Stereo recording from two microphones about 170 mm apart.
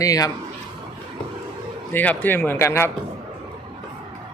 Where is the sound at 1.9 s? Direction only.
10° left (ahead or behind).